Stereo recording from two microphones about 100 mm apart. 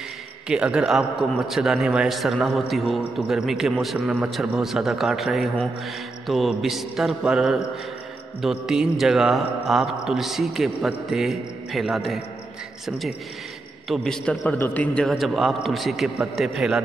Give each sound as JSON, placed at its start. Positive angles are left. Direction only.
{"t": 0.5, "sound": "a man's voice", "side_deg": -10}
{"t": 13.8, "sound": "a man's voice", "side_deg": 0}
{"t": 14.4, "sound": "a man's voice", "side_deg": 15}
{"t": 15.0, "sound": "a man's voice", "side_deg": 0}